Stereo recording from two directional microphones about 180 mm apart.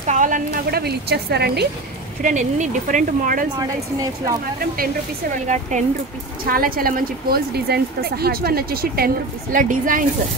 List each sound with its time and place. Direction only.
0.0 s a woman's voice: 45° right (ahead or behind); by 1.7 s 65° right (ahead or behind)
2.2 s speech: 45° right (ahead or behind)
3.5 s speech: 20° right (ahead or behind)
5.3 s a woman's voice: 40° right (ahead or behind)
6.4 s a woman's voice: 55° right (ahead or behind)